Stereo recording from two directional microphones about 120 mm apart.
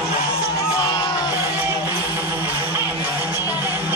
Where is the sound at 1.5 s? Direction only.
20° right (ahead or behind).